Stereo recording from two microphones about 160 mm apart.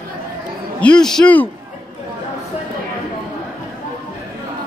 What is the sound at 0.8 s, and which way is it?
Speech, 5° left (ahead or behind).